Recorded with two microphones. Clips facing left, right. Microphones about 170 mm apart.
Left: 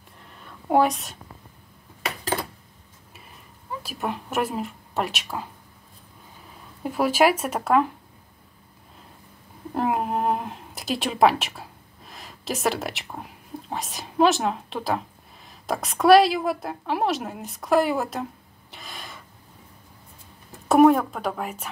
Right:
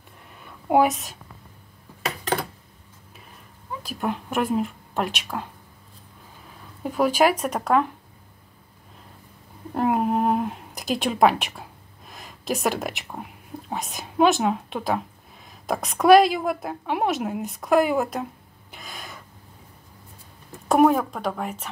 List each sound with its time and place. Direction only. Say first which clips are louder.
0.4 s a sound: right 1 dB; 5° right (ahead or behind)
3.8 s speech: right 3 dB; 5° left (ahead or behind)
6.8 s a woman's voice: even; 5° left (ahead or behind)
9.8 s a sound: right 3 dB; centre (ahead or behind)
12.1 s a woman's voice: right 3 dB; centre (ahead or behind)
18.7 s snort: right 1 dB; centre (ahead or behind)
20.7 s a woman's voice: left 2 dB; centre (ahead or behind)